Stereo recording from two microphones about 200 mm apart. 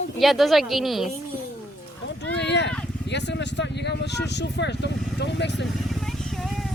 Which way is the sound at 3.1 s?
60° left (ahead or behind).